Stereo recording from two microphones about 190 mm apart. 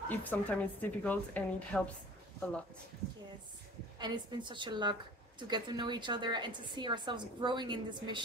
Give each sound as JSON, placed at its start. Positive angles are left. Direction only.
{"t": 0.1, "sound": "a woman's voice", "side_deg": 10}
{"t": 4.0, "sound": "a woman's voice", "side_deg": -25}